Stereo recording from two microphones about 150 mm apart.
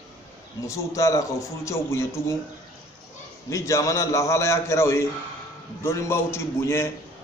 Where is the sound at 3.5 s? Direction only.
20° left (ahead or behind).